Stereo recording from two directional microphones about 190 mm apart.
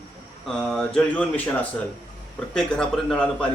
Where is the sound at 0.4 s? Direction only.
Centre (ahead or behind).